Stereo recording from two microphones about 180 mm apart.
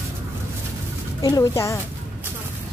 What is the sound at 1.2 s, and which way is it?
Speech, 20° left (ahead or behind).